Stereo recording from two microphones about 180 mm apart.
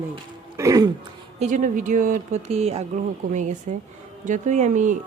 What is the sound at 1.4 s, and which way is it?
Speech, 45° right (ahead or behind).